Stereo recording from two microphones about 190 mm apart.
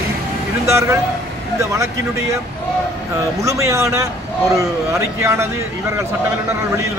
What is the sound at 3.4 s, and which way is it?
A man's voice, 15° right (ahead or behind).